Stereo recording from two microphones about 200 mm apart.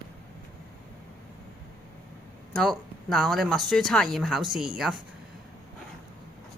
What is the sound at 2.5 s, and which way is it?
Speech, centre (ahead or behind).